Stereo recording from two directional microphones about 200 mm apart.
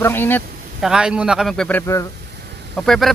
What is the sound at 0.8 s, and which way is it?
Speech, 5° right (ahead or behind).